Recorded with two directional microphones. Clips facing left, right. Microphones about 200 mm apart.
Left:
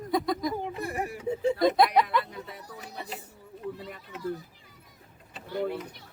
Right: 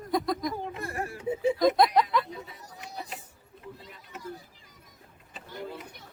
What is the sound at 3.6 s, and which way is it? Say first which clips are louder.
Run: left 9 dB; 65° left (ahead or behind).